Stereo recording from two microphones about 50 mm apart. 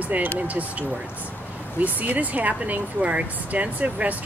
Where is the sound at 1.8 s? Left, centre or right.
Right.